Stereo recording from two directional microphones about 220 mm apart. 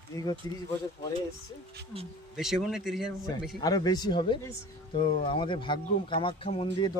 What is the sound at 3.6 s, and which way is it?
Speech, 15° left (ahead or behind).